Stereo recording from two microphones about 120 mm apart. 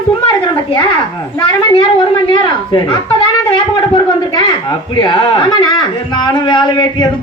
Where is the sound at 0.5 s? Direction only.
35° left (ahead or behind).